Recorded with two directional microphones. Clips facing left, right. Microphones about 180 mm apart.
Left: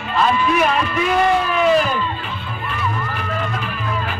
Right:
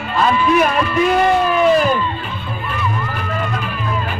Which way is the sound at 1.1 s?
45° right (ahead or behind).